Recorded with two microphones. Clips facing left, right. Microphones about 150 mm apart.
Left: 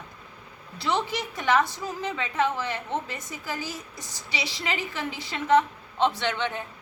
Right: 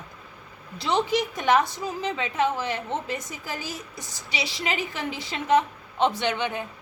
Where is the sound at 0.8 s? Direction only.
20° right (ahead or behind).